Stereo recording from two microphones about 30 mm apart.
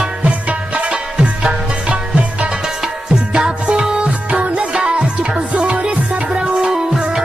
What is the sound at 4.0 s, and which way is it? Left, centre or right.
Music, right.